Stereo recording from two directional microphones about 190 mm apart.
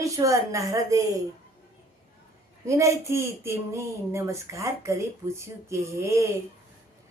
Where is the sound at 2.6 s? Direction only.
15° right (ahead or behind).